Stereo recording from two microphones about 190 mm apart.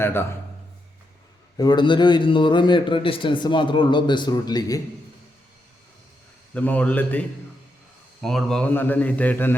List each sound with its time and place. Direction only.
0.0 s a man's voice: 10° left (ahead or behind)
1.5 s a man's voice: 20° left (ahead or behind)
6.5 s a man's voice: 5° left (ahead or behind)